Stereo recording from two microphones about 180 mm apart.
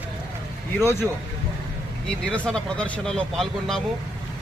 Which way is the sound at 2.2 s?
5° left (ahead or behind).